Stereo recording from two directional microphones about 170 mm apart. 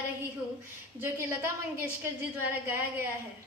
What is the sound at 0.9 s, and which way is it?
A woman's voice, 10° right (ahead or behind).